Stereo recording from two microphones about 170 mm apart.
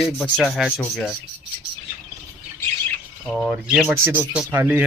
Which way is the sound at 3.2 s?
5° left (ahead or behind).